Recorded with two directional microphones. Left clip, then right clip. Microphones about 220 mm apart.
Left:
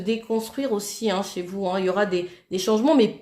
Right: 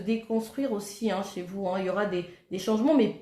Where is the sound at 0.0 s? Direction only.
40° left (ahead or behind).